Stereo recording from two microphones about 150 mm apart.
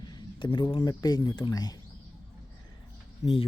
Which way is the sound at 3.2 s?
45° left (ahead or behind).